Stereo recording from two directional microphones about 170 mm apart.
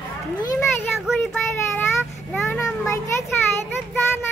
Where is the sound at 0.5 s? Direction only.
5° left (ahead or behind).